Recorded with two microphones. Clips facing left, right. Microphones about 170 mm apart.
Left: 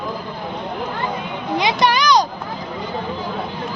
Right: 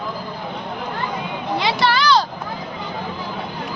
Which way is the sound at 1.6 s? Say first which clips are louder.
Left 2 dB; 15° left (ahead or behind).